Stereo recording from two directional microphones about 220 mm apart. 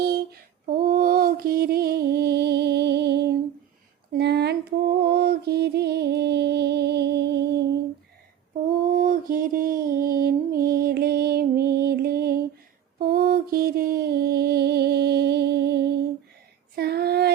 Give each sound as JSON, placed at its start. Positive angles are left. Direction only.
{"t": 0.0, "sound": "female singing", "side_deg": -45}
{"t": 4.1, "sound": "mantra", "side_deg": -50}
{"t": 8.9, "sound": "music", "side_deg": -40}
{"t": 13.0, "sound": "a sound", "side_deg": -40}
{"t": 16.7, "sound": "child singing", "side_deg": -45}